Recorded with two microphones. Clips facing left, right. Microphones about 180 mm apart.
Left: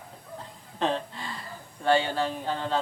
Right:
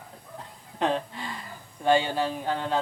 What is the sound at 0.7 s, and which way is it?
Speech, 15° right (ahead or behind).